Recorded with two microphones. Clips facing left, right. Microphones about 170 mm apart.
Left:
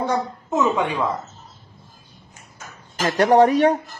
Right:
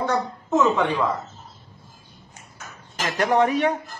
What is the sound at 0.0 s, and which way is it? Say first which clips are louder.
A woman's voice: left 1 dB; 10° left (ahead or behind).